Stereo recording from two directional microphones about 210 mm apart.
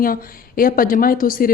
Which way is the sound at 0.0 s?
45° left (ahead or behind).